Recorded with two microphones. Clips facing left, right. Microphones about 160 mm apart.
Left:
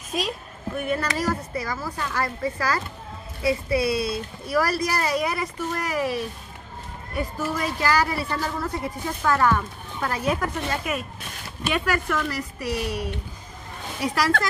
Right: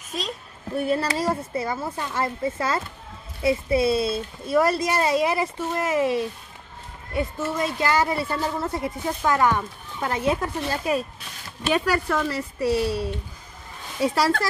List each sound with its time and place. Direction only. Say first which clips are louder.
0.1 s a woman's voice: left 4 dB; 15° left (ahead or behind)
0.7 s a woman's voice: right 3 dB; 30° right (ahead or behind)